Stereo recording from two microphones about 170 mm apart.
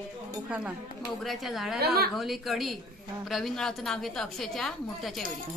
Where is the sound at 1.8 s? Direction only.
70° right (ahead or behind).